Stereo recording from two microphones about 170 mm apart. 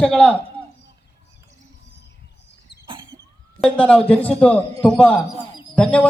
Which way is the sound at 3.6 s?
5° left (ahead or behind).